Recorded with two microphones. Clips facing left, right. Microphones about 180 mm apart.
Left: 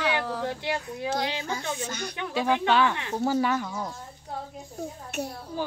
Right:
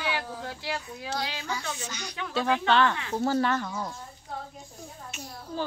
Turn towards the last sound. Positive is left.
turn(degrees=10)  # may be behind; listen again after turning